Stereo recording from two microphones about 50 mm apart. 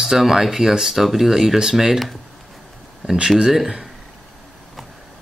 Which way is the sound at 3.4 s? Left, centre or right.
Centre.